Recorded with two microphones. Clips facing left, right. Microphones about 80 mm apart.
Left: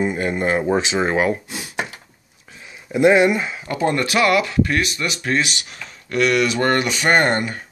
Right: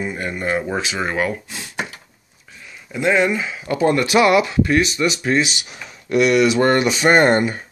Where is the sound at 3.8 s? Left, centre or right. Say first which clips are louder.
Right 3 dB; centre.